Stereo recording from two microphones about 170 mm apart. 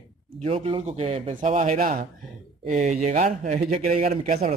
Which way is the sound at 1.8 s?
55° right (ahead or behind).